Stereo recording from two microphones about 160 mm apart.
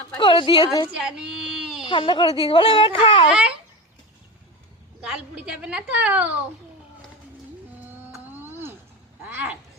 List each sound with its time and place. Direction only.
0.2 s a woman's voice: 30° left (ahead or behind)
1.9 s speech: 30° left (ahead or behind)
3.2 s a child's voice: 5° right (ahead or behind)
5.0 s a woman's voice: 5° right (ahead or behind)
8.1 s a sound: 15° right (ahead or behind)
9.2 s speech: 10° right (ahead or behind)